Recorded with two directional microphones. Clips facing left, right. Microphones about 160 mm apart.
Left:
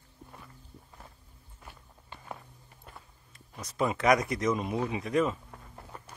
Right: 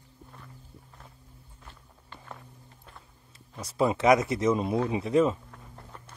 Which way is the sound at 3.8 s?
25° right (ahead or behind).